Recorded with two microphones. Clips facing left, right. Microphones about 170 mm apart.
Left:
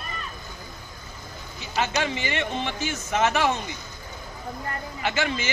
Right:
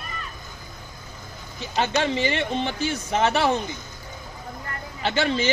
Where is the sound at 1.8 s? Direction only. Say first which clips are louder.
Right 3 dB; 30° right (ahead or behind).